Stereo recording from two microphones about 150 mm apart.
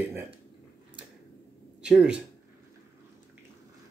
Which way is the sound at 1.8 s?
5° right (ahead or behind).